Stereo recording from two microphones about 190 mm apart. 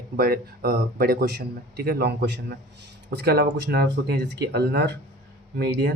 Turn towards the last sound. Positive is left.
turn(degrees=-60)  # may be behind; listen again after turning